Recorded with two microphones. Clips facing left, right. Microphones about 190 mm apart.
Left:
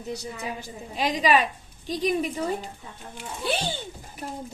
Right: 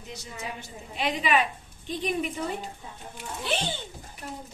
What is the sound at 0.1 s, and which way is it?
A woman's voice, 35° left (ahead or behind).